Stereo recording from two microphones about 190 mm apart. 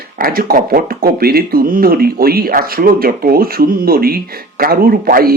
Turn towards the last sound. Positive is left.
turn(degrees=-50)  # may be behind; listen again after turning